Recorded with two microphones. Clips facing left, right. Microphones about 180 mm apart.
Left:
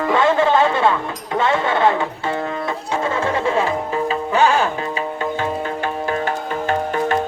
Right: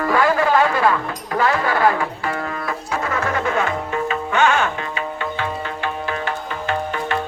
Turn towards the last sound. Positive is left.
turn(degrees=45)  # may be behind; listen again after turning